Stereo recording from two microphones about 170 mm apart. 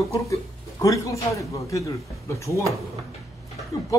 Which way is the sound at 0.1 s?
20° left (ahead or behind).